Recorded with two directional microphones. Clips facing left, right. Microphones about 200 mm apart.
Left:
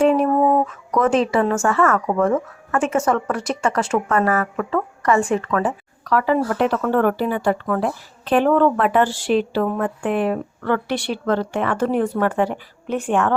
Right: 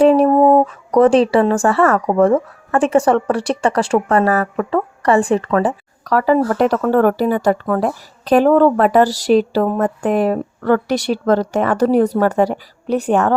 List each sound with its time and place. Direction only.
0.0 s speech: 35° right (ahead or behind)